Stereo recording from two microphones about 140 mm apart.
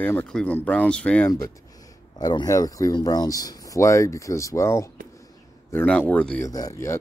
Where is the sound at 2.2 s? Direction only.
30° left (ahead or behind); by 6.4 s 10° left (ahead or behind).